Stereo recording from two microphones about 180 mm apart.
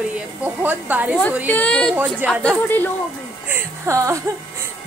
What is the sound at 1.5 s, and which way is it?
A woman's voice, 5° left (ahead or behind).